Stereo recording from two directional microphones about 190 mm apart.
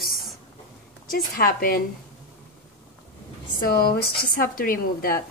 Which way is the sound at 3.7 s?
50° left (ahead or behind).